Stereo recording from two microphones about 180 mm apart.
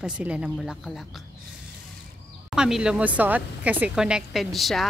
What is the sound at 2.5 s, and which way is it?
A woman's voice, 5° right (ahead or behind).